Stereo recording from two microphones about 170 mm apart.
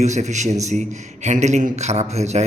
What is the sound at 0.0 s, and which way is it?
A man's voice, 45° right (ahead or behind).